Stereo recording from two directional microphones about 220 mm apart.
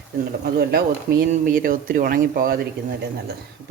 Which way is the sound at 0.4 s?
45° right (ahead or behind).